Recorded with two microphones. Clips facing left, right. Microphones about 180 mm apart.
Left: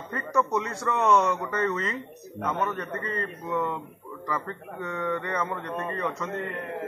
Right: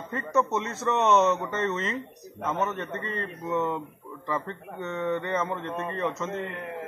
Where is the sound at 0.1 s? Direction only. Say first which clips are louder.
Even; 25° right (ahead or behind).